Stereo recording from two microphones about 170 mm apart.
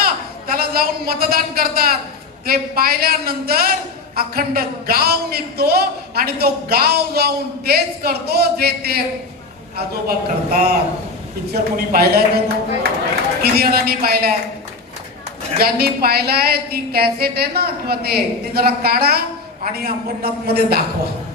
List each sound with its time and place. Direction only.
0.0 s a man's voice: 65° right (ahead or behind)
13.4 s a man's voice: 65° right (ahead or behind)
15.5 s a man's voice: 65° right (ahead or behind)